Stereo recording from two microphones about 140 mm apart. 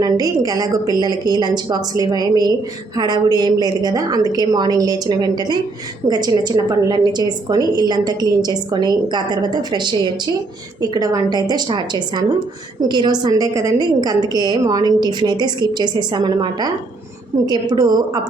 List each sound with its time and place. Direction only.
0.0 s a woman's voice: 25° right (ahead or behind)